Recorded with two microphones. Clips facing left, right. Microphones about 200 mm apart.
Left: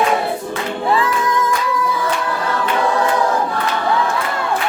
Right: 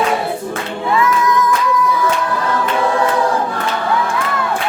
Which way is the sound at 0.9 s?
30° left (ahead or behind).